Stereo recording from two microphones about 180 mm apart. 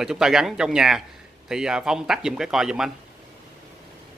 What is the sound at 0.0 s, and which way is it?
Speech, 5° right (ahead or behind).